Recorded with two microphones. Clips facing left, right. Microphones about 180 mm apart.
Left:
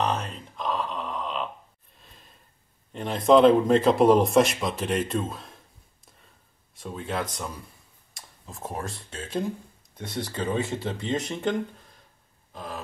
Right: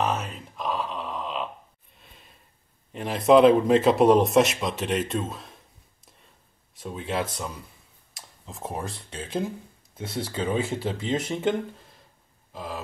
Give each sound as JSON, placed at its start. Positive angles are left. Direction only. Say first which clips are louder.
{"t": 0.0, "sound": "a sound", "louder": "even", "side_deg": -5}
{"t": 2.9, "sound": "speech", "louder": "right 1 dB", "side_deg": -5}
{"t": 7.0, "sound": "speech", "louder": "right 2 dB", "side_deg": -25}
{"t": 8.1, "sound": "speech", "louder": "right 1 dB", "side_deg": 0}
{"t": 12.5, "sound": "speech", "louder": "right 2 dB", "side_deg": 0}